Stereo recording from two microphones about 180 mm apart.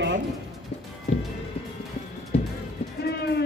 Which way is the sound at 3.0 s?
70° left (ahead or behind).